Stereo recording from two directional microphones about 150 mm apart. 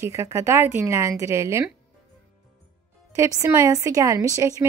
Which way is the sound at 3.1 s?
20° right (ahead or behind).